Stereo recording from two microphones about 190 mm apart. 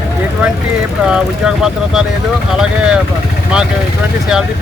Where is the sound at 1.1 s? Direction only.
5° right (ahead or behind).